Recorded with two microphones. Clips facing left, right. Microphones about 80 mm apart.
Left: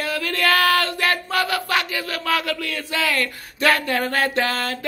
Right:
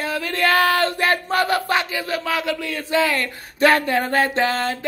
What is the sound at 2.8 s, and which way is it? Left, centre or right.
Speech, right.